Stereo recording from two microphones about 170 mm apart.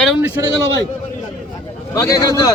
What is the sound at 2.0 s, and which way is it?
Speech, 20° left (ahead or behind).